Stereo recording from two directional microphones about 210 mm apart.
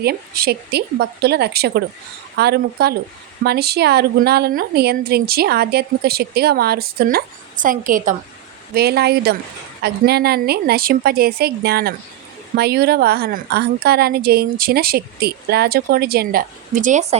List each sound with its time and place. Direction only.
0.0 s a woman's voice: 45° right (ahead or behind)